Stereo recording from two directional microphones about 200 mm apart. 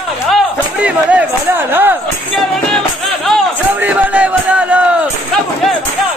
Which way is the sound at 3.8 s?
5° right (ahead or behind).